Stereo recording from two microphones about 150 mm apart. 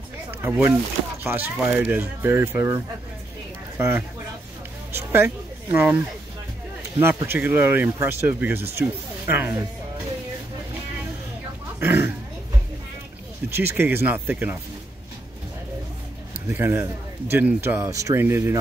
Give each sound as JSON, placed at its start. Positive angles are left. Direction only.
{"t": 0.5, "sound": "a man's voice", "side_deg": -10}
{"t": 7.0, "sound": "a man's voice", "side_deg": -15}
{"t": 11.8, "sound": "a man's voice", "side_deg": -15}
{"t": 13.6, "sound": "a man's voice", "side_deg": -15}
{"t": 16.4, "sound": "a man's voice", "side_deg": -15}